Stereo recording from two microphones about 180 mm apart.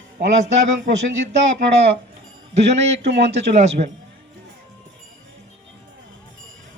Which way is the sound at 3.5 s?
35° right (ahead or behind).